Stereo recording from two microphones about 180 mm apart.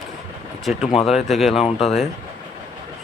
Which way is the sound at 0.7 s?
5° right (ahead or behind).